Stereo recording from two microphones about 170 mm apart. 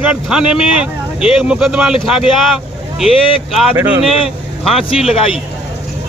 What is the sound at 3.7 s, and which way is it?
Speech, 25° right (ahead or behind).